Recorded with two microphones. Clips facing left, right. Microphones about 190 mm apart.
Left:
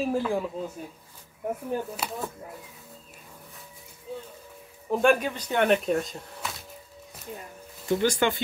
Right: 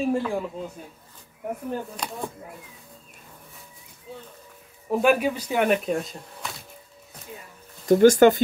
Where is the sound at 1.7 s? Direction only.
5° left (ahead or behind).